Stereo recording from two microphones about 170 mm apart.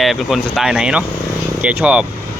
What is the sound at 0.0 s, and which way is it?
Speech, centre (ahead or behind).